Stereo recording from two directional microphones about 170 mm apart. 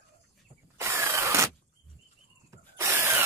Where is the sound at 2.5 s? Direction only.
15° right (ahead or behind).